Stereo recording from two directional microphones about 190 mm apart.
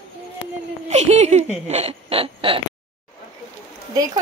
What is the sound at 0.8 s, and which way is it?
Speech, 35° right (ahead or behind).